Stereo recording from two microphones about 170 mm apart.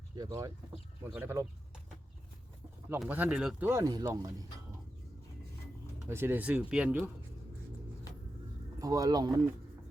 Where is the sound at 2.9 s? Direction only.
10° right (ahead or behind).